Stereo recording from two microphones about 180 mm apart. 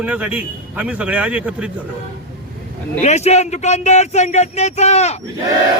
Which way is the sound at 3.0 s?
40° left (ahead or behind).